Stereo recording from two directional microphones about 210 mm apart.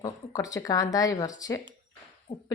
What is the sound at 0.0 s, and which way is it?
A woman's voice, 15° left (ahead or behind).